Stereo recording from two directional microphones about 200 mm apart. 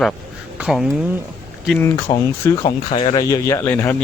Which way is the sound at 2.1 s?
20° left (ahead or behind).